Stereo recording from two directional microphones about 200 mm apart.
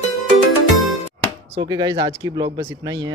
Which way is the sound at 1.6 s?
20° right (ahead or behind).